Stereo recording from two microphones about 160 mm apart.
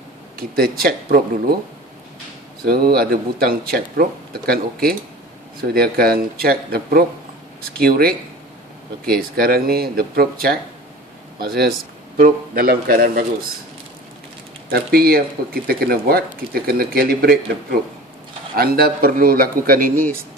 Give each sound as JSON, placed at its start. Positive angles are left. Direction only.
{"t": 0.4, "sound": "speech", "side_deg": -70}
{"t": 2.6, "sound": "a man's voice", "side_deg": -65}
{"t": 14.7, "sound": "speech", "side_deg": -70}